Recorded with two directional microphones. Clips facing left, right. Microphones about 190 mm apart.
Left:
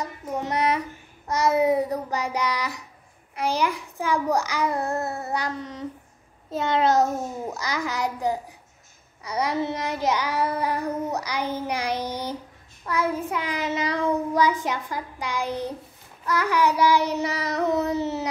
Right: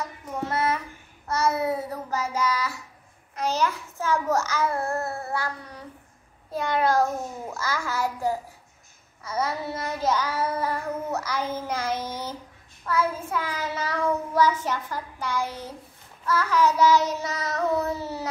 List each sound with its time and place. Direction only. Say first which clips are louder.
0.4 s a child's voice: left 2 dB; 15° left (ahead or behind)
3.3 s child singing: left 1 dB; 10° left (ahead or behind)
6.5 s a child's voice: left 2 dB; 25° left (ahead or behind)
9.2 s child singing: left 3 dB; 15° left (ahead or behind)